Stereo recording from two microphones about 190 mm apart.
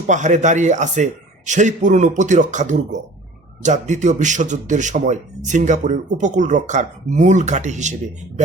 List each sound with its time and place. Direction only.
0.1 s a man's voice: 40° right (ahead or behind)